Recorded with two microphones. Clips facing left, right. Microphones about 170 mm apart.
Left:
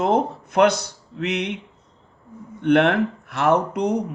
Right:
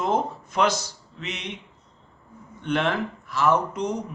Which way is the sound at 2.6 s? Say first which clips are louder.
Left 8 dB; 60° left (ahead or behind).